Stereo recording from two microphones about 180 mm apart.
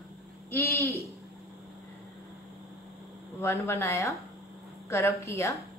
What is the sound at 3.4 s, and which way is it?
A woman's voice, 15° left (ahead or behind).